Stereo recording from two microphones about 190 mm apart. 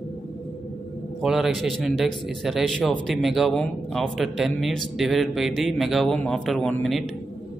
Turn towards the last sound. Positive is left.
turn(degrees=0)  # may be behind; listen again after turning